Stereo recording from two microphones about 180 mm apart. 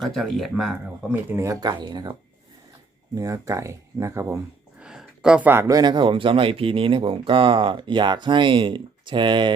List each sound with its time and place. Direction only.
0.0 s speech: centre (ahead or behind); by 2.1 s 25° right (ahead or behind)
3.2 s speech: 20° right (ahead or behind)
4.8 s speech: 5° right (ahead or behind); by 9.6 s 25° right (ahead or behind)